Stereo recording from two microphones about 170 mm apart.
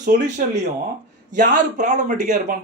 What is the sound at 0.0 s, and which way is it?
Speech, 45° right (ahead or behind).